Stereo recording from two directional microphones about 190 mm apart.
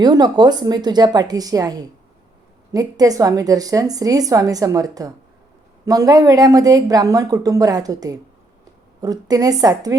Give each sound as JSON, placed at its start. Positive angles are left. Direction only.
{"t": 0.0, "sound": "speech", "side_deg": -20}